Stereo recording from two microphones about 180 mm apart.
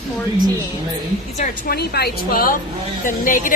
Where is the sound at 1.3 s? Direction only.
50° left (ahead or behind).